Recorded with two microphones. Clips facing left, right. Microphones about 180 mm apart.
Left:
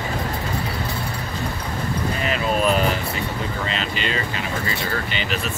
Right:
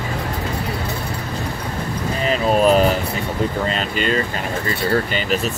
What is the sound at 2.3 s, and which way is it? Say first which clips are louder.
Vehicle: right 6 dB; 40° right (ahead or behind).